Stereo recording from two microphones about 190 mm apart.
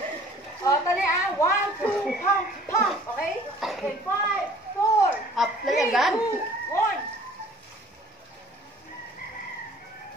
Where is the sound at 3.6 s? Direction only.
Centre (ahead or behind).